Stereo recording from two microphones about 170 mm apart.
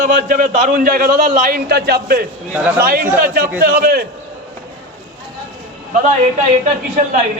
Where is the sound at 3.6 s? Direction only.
60° right (ahead or behind).